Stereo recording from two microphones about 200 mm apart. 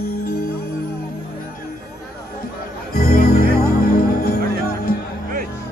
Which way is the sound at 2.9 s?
45° left (ahead or behind).